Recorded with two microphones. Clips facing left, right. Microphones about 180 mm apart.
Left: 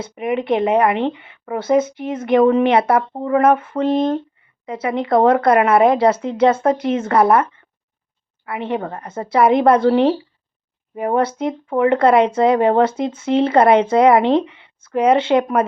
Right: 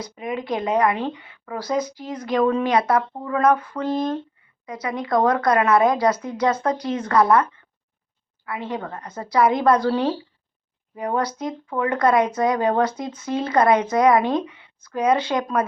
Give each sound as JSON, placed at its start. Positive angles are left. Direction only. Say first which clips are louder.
{"t": 0.0, "sound": "speech", "louder": "left 7 dB", "side_deg": 25}